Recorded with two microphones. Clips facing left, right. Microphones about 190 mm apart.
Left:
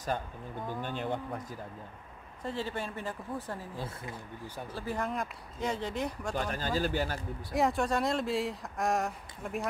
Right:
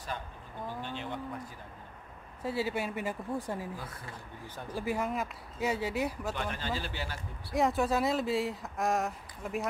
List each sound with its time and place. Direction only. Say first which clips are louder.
0.8 s speech: left 4 dB; 50° left (ahead or behind)
2.4 s speech: right 3 dB; 10° right (ahead or behind)
3.7 s speech: left 3 dB; 25° left (ahead or behind)
4.6 s speech: right 3 dB; 10° right (ahead or behind)
6.3 s speech: left 3 dB; 40° left (ahead or behind)
7.5 s speech: right 1 dB; centre (ahead or behind)